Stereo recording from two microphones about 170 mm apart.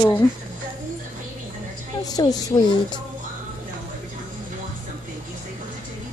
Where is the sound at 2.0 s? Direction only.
20° left (ahead or behind).